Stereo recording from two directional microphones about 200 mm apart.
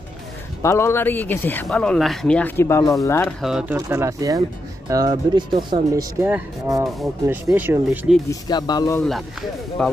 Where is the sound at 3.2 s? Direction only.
Centre (ahead or behind).